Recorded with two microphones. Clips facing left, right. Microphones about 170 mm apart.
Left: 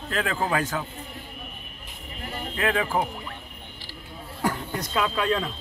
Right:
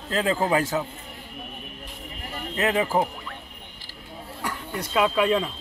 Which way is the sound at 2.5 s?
20° right (ahead or behind).